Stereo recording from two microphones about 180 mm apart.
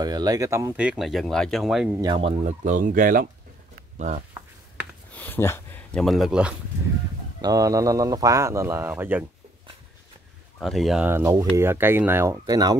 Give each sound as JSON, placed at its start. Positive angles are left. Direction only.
{"t": 0.0, "sound": "speech", "side_deg": -20}
{"t": 2.0, "sound": "speech", "side_deg": -25}
{"t": 5.1, "sound": "speech", "side_deg": 10}
{"t": 7.4, "sound": "speech", "side_deg": -20}
{"t": 10.6, "sound": "speech", "side_deg": 0}
{"t": 11.1, "sound": "speech", "side_deg": -15}